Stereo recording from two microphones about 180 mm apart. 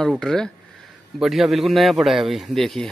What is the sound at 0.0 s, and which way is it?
Speech, centre (ahead or behind).